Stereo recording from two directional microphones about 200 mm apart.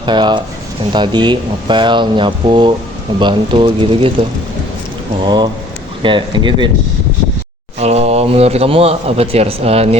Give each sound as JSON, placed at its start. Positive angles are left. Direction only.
{"t": 0.0, "sound": "speech", "side_deg": -20}
{"t": 7.8, "sound": "a man's voice", "side_deg": -30}